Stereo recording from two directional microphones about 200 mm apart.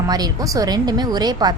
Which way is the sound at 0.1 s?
20° right (ahead or behind).